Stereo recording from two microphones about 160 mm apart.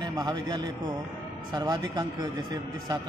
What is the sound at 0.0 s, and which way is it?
A man's voice, 25° right (ahead or behind).